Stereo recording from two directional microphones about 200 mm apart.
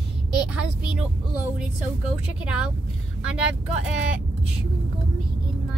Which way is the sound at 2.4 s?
5° right (ahead or behind).